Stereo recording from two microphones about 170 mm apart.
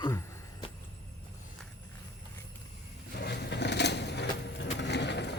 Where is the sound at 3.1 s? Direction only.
70° left (ahead or behind); by 5.3 s 85° left.